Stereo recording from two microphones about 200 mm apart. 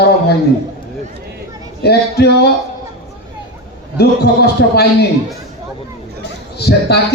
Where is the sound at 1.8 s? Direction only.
55° left (ahead or behind).